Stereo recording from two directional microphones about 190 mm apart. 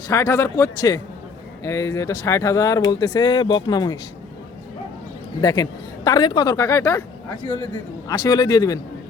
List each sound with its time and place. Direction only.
0.1 s speech: 15° left (ahead or behind)
5.4 s a man's voice: 20° left (ahead or behind)